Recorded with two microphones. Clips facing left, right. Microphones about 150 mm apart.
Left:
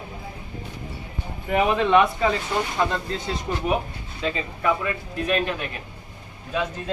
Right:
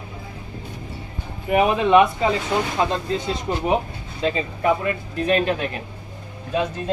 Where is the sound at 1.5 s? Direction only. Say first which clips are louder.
Right 3 dB; 15° right (ahead or behind).